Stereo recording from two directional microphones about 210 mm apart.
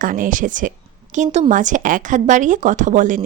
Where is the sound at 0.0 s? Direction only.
40° right (ahead or behind).